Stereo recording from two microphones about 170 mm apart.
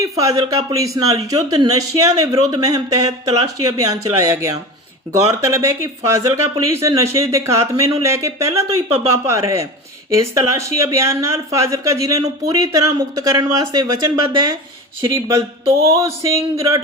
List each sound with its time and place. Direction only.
0.0 s speech: 20° right (ahead or behind)